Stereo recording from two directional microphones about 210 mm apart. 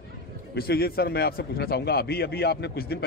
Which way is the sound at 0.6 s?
50° left (ahead or behind).